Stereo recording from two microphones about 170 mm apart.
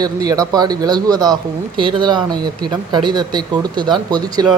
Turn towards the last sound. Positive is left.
turn(degrees=-25)  # may be behind; listen again after turning